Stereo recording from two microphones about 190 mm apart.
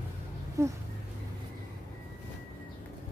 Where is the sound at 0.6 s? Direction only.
15° right (ahead or behind).